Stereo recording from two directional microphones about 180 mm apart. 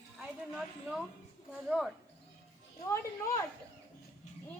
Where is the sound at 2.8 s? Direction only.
15° left (ahead or behind).